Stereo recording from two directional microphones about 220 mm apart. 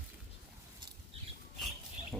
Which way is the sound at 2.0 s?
30° right (ahead or behind).